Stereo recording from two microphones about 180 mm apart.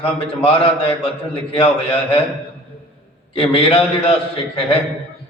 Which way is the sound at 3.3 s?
30° left (ahead or behind).